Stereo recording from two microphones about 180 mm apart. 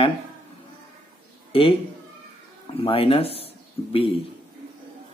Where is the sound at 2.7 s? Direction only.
30° left (ahead or behind).